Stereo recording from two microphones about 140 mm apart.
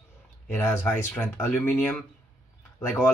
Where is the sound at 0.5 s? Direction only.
15° left (ahead or behind).